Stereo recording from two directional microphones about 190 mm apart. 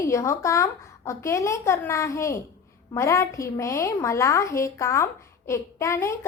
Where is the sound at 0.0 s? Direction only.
15° left (ahead or behind).